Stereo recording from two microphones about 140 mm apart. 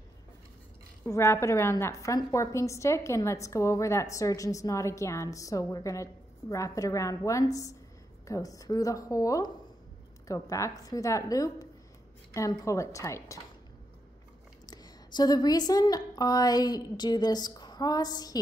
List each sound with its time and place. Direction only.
1.0 s a woman's voice: 20° left (ahead or behind)
14.7 s a woman's voice: 30° left (ahead or behind)